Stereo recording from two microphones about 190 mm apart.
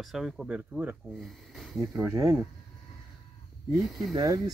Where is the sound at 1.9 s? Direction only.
15° right (ahead or behind).